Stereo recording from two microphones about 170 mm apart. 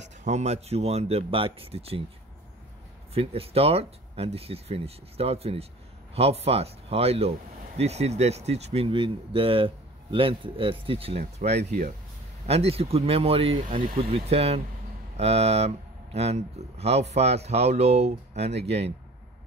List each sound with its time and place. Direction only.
0.0 s speech: 45° right (ahead or behind)
3.2 s speech: 35° right (ahead or behind)